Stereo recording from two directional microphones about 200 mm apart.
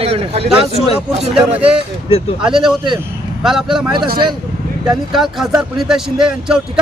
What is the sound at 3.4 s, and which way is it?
Speech, centre (ahead or behind).